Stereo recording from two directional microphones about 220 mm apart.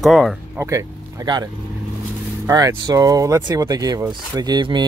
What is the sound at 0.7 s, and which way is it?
Speech, 15° right (ahead or behind).